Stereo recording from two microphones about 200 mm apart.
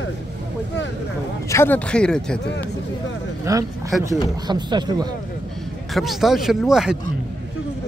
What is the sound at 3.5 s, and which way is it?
Speech, 15° right (ahead or behind).